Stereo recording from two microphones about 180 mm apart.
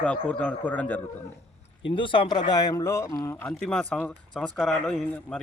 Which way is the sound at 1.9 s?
30° left (ahead or behind).